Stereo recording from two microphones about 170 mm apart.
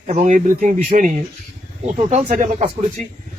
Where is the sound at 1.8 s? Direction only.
40° right (ahead or behind).